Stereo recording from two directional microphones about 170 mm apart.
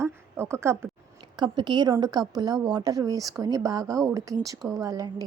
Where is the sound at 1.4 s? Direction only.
25° right (ahead or behind).